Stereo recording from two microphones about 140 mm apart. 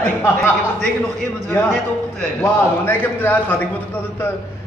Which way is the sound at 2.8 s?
15° left (ahead or behind).